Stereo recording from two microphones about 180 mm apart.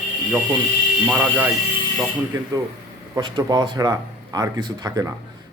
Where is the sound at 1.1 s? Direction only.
10° right (ahead or behind).